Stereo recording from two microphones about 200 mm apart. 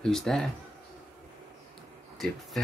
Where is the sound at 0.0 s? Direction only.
Centre (ahead or behind).